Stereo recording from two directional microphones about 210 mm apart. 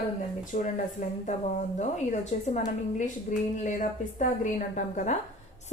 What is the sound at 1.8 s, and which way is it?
A woman's voice, 35° left (ahead or behind).